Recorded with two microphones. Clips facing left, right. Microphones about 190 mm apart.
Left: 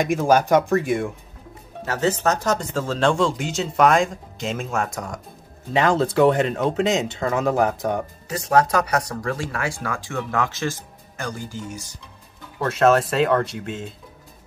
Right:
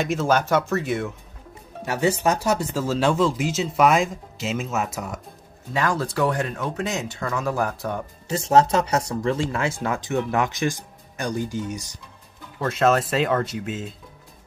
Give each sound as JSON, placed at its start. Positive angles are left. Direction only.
{"t": 0.0, "sound": "speech", "side_deg": 15}
{"t": 1.9, "sound": "speech", "side_deg": -10}
{"t": 5.7, "sound": "speech", "side_deg": 20}
{"t": 8.3, "sound": "speech", "side_deg": -25}
{"t": 12.5, "sound": "speech", "side_deg": 0}